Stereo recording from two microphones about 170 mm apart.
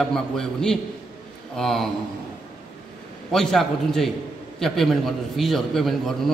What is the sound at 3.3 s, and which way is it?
A man's voice, centre (ahead or behind).